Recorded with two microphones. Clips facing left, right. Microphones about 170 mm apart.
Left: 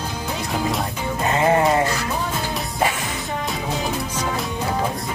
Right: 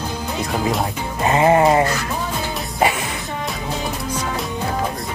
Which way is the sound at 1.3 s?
25° right (ahead or behind).